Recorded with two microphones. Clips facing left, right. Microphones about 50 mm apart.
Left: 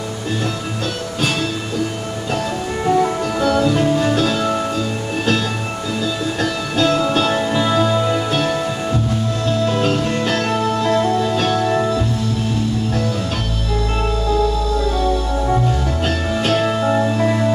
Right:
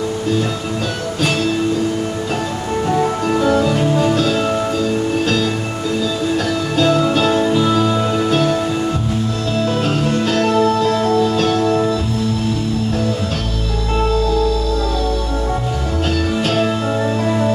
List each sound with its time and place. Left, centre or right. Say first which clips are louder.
3.6 s music: even; centre
6.8 s music: right 1 dB; centre
10.8 s music: right 2 dB; centre
16.4 s music: left 4 dB; centre